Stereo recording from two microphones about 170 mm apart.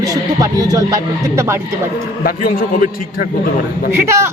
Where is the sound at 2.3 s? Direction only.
55° left (ahead or behind).